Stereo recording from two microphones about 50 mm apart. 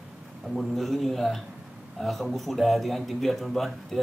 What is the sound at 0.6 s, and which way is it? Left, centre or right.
A man's voice, centre.